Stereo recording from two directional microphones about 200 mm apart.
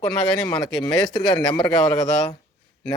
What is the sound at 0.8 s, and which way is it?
Speech, 20° left (ahead or behind).